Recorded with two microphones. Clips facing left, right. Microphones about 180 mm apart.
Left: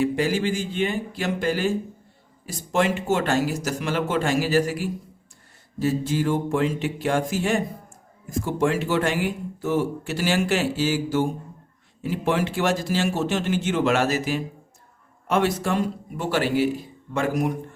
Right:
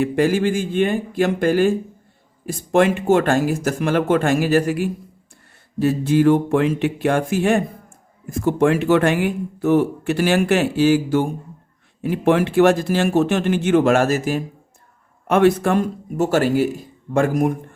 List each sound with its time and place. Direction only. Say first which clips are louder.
0.0 s speech: right 5 dB; 55° right (ahead or behind)